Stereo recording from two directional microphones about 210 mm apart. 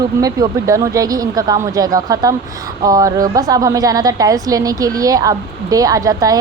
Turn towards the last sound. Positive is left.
turn(degrees=-15)  # may be behind; listen again after turning